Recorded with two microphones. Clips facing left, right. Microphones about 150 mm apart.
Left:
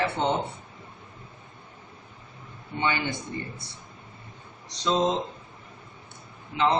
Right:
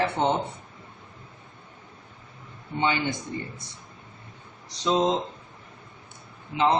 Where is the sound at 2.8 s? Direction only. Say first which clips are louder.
Right 2 dB; 20° right (ahead or behind).